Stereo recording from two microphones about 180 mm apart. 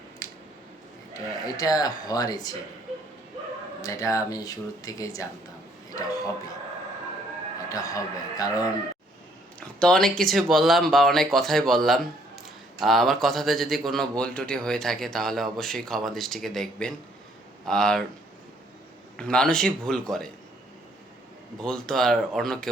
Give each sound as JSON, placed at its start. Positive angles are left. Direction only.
{"t": 1.5, "sound": "speech", "side_deg": 20}
{"t": 3.8, "sound": "speech", "side_deg": 20}
{"t": 7.7, "sound": "speech", "side_deg": 20}
{"t": 9.8, "sound": "speech", "side_deg": 5}
{"t": 19.1, "sound": "speech", "side_deg": 5}
{"t": 21.6, "sound": "speech", "side_deg": 5}